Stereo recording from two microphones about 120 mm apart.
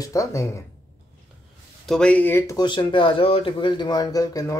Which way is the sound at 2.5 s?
40° left (ahead or behind).